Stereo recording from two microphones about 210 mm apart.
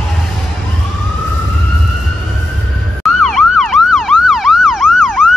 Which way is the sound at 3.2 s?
Centre (ahead or behind).